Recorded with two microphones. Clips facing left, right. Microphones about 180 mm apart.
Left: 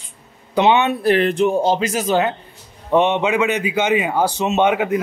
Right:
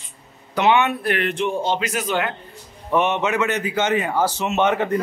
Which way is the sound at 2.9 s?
15° left (ahead or behind).